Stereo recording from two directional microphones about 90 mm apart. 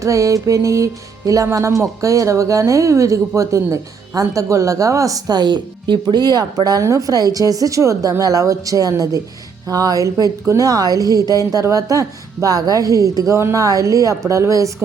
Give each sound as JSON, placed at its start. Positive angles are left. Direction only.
{"t": 0.0, "sound": "music", "side_deg": -40}
{"t": 9.6, "sound": "speech", "side_deg": -40}
{"t": 10.5, "sound": "music", "side_deg": -40}